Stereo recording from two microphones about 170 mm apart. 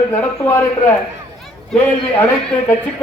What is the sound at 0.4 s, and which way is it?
Speech, 15° left (ahead or behind).